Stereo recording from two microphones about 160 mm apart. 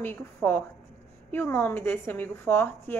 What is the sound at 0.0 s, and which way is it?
A woman's voice, 10° left (ahead or behind).